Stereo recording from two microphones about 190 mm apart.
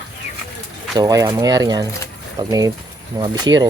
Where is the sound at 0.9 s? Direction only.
20° right (ahead or behind).